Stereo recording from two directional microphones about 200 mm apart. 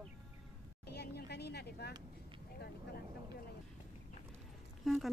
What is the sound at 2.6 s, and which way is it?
Vehicle, 50° left (ahead or behind).